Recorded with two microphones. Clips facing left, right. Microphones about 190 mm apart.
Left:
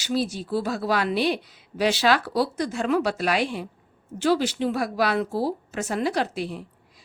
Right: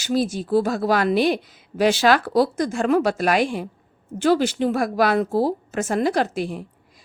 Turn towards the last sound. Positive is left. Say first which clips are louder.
# right 4 dB
turn(degrees=-45)  # may be behind; listen again after turning